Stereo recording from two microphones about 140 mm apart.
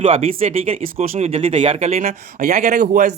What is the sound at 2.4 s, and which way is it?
Speech, 80° right.